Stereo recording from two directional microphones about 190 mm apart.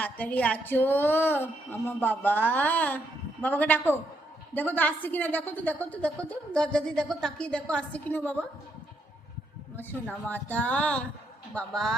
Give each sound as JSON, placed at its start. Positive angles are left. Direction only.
{"t": 0.0, "sound": "a woman's voice", "side_deg": 10}
{"t": 9.7, "sound": "a woman's voice", "side_deg": 10}